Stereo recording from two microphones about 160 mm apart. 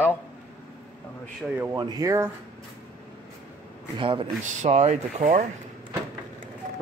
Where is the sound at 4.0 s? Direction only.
30° right (ahead or behind).